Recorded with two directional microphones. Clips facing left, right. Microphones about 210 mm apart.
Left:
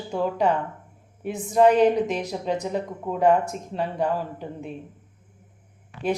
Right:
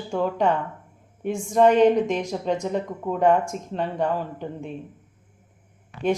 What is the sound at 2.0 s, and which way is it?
Speech, 35° left (ahead or behind).